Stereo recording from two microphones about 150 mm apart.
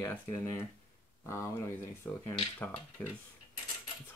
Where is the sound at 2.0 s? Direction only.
15° left (ahead or behind).